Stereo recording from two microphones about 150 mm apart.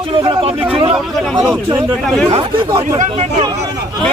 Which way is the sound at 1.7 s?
25° right (ahead or behind).